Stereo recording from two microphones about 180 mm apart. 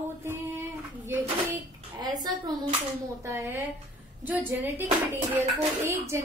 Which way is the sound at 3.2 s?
15° right (ahead or behind).